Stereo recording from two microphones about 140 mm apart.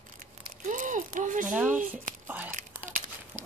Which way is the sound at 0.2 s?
70° right (ahead or behind).